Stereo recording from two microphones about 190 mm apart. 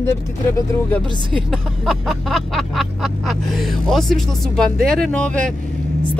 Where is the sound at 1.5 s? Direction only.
Centre (ahead or behind).